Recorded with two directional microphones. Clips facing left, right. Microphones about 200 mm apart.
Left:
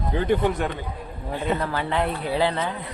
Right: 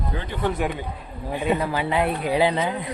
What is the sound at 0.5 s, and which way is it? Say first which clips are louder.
Speech: right 1 dB; 10° right (ahead or behind).